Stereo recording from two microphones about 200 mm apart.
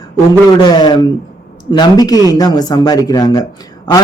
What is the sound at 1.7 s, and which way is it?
A man's voice, 20° left (ahead or behind).